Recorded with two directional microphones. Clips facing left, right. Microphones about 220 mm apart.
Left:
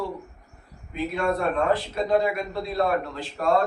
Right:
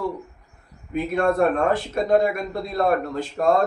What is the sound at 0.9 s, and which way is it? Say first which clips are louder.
Speech: right 4 dB; 50° right (ahead or behind).